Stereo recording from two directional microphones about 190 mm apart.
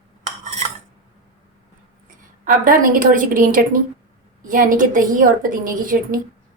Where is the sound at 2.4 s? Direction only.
45° right (ahead or behind).